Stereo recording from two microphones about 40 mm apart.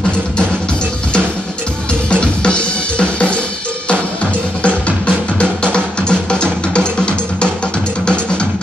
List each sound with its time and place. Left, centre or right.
2.0 s drum kit: left
3.9 s drum: left